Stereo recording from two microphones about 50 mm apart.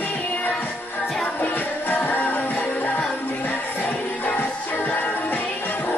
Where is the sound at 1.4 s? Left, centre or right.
Left.